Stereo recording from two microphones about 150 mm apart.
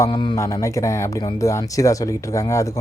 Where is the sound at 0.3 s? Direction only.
20° left (ahead or behind).